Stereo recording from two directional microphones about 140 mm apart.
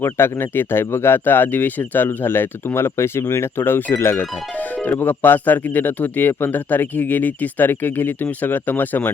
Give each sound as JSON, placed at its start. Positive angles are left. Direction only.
{"t": 0.0, "sound": "speech", "side_deg": 15}